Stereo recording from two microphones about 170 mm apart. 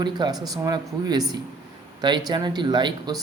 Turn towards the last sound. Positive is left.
turn(degrees=-25)  # may be behind; listen again after turning